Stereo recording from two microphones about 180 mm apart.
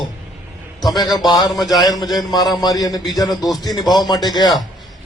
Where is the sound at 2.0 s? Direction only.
Centre (ahead or behind).